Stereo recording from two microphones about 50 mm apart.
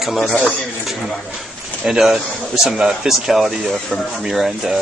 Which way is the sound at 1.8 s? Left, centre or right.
Centre.